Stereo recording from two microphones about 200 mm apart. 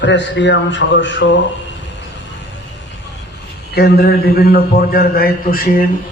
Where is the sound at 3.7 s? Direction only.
50° left (ahead or behind).